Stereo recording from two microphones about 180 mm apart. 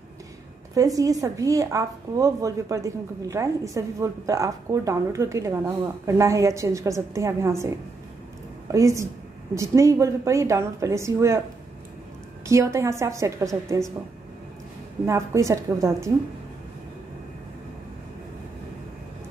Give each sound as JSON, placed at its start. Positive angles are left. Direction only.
{"t": 0.7, "sound": "a woman's voice", "side_deg": -20}
{"t": 8.7, "sound": "a woman's voice", "side_deg": -15}
{"t": 12.4, "sound": "a woman's voice", "side_deg": -15}
{"t": 15.0, "sound": "a woman's voice", "side_deg": -15}